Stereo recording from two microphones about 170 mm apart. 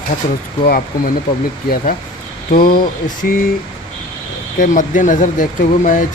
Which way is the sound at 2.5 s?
55° left (ahead or behind).